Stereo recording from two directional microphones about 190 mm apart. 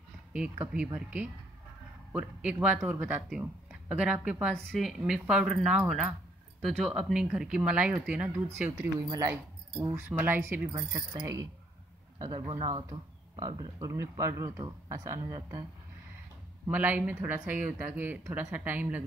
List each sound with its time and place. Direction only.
0.3 s speech: 5° right (ahead or behind); by 15.6 s 20° right (ahead or behind)
16.7 s speech: 10° right (ahead or behind)